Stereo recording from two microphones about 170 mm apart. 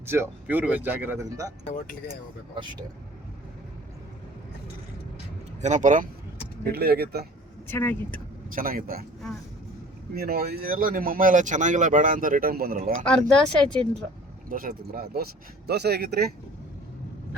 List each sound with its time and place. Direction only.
0.0 s speech: 15° right (ahead or behind)
5.6 s speech: 45° right (ahead or behind)
6.7 s speech: 70° right (ahead or behind)
7.7 s speech: 10° left (ahead or behind)
8.5 s speech: 60° right (ahead or behind)
10.2 s speech: 65° right (ahead or behind)
13.1 s speech: 5° left (ahead or behind)
14.5 s speech: 60° right (ahead or behind)